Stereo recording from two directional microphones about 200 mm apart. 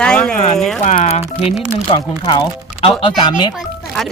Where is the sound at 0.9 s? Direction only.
35° left (ahead or behind).